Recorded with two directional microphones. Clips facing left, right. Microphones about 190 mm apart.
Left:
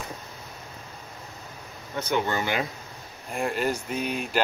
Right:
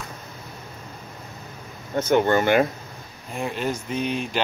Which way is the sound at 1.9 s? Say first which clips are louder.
Right 8 dB; 50° right (ahead or behind).